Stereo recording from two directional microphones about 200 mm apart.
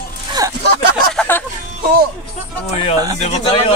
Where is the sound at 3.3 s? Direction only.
30° left (ahead or behind).